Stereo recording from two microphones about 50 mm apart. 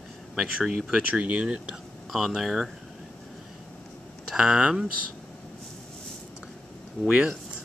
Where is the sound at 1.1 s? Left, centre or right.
Right.